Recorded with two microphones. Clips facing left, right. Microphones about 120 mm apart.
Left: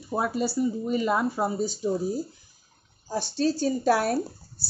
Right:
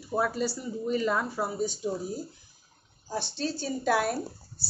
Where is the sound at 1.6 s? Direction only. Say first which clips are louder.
Left 2 dB; 35° left (ahead or behind).